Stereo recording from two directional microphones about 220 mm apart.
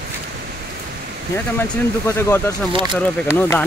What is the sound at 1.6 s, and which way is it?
Speech, 10° left (ahead or behind).